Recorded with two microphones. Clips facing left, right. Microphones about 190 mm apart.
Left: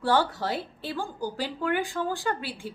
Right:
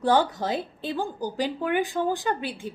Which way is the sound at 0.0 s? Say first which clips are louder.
Right 3 dB; 15° right (ahead or behind).